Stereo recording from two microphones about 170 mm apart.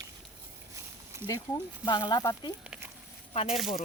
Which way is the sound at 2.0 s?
20° left (ahead or behind).